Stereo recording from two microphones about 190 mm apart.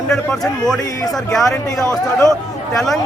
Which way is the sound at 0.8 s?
15° left (ahead or behind).